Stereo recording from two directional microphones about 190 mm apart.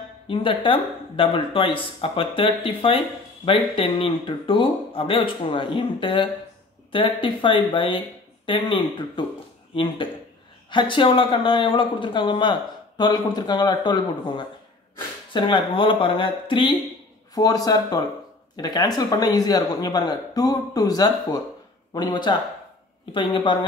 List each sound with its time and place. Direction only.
0.3 s speech: 25° left (ahead or behind)
10.7 s speech: 25° left (ahead or behind)